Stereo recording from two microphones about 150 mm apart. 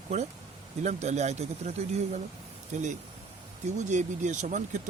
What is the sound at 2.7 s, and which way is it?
Speech, 50° right (ahead or behind).